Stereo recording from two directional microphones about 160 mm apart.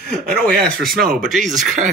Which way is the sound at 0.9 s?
65° right (ahead or behind).